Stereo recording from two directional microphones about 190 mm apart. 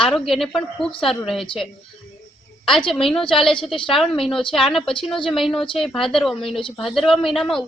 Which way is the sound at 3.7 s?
25° left (ahead or behind).